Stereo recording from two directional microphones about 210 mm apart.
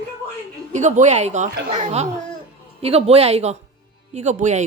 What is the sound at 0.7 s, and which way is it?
Speech, 35° right (ahead or behind).